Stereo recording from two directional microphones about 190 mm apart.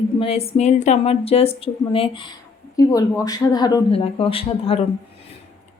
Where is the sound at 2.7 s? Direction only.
15° left (ahead or behind).